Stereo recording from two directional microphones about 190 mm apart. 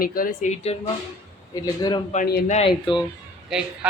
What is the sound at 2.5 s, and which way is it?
Speech, 25° left (ahead or behind).